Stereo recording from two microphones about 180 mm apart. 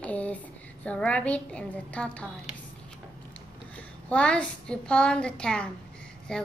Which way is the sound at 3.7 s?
10° left (ahead or behind).